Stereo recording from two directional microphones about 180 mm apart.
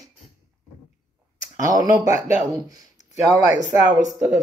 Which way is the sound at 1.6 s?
20° right (ahead or behind).